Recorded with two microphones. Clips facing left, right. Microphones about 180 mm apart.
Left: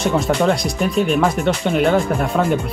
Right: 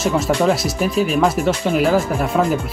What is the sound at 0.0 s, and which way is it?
Speech, 5° right (ahead or behind).